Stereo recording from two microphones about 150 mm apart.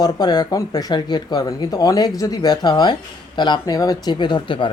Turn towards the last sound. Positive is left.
turn(degrees=35)  # may be behind; listen again after turning